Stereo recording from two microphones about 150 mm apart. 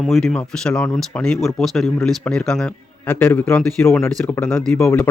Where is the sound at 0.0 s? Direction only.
Centre (ahead or behind).